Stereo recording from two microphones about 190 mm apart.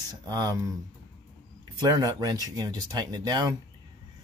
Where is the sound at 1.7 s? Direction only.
20° right (ahead or behind).